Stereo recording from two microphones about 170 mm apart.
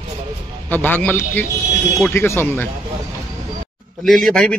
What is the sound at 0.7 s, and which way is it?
Speech, 10° left (ahead or behind).